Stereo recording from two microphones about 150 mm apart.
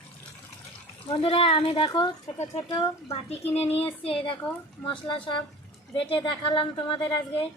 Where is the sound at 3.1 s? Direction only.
40° left (ahead or behind).